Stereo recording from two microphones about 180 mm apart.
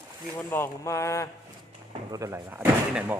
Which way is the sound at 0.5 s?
15° left (ahead or behind).